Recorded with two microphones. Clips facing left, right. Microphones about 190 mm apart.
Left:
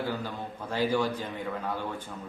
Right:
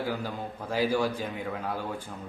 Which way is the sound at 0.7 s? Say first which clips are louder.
Right 1 dB; 10° right (ahead or behind).